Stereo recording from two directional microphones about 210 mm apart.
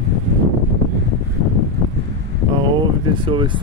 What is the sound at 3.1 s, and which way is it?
Speech, 25° right (ahead or behind).